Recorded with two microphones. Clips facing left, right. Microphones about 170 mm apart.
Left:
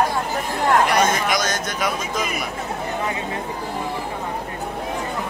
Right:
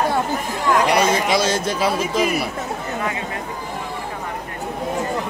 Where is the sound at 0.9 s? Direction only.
30° right (ahead or behind).